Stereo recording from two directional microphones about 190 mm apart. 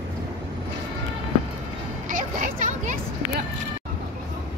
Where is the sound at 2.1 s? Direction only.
45° right (ahead or behind).